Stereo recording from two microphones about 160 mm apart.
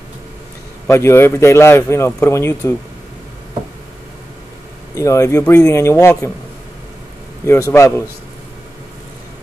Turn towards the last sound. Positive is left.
turn(degrees=20)  # may be behind; listen again after turning